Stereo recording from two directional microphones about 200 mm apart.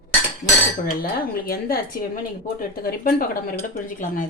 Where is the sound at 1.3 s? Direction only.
50° left (ahead or behind).